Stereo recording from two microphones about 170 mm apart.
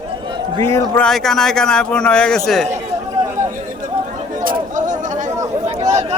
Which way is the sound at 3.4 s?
50° right (ahead or behind).